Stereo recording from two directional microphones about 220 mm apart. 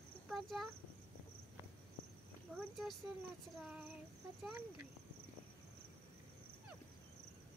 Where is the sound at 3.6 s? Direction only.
5° right (ahead or behind).